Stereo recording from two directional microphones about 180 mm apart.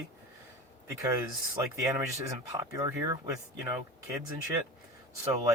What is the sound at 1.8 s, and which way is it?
Speech, 15° right (ahead or behind).